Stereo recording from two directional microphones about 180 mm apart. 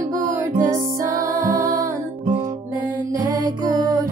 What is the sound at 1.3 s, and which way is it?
Music, 45° right (ahead or behind).